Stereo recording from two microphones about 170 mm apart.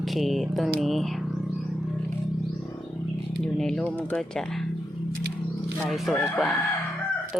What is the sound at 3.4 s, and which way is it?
Speech, 5° left (ahead or behind).